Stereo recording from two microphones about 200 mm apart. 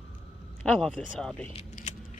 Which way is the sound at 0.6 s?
5° left (ahead or behind).